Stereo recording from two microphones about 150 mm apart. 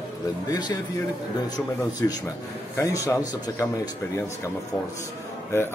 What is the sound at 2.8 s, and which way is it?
Speech, 20° left (ahead or behind).